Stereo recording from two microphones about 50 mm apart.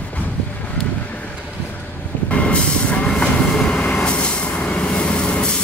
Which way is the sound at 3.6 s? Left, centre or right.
Left.